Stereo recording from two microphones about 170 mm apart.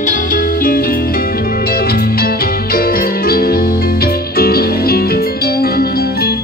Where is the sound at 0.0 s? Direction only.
55° left (ahead or behind).